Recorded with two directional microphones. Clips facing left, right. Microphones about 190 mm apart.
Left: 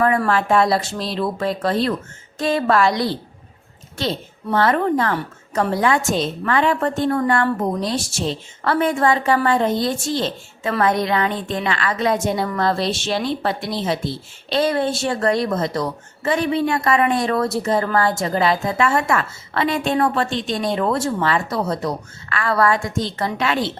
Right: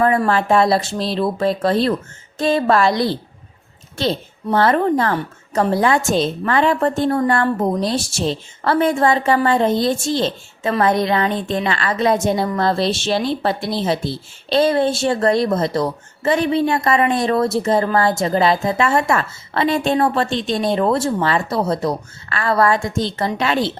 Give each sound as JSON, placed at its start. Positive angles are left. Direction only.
{"t": 0.3, "sound": "a woman's voice", "side_deg": -30}